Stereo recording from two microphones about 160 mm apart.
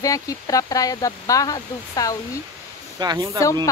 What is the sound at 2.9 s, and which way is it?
Speech, 25° right (ahead or behind).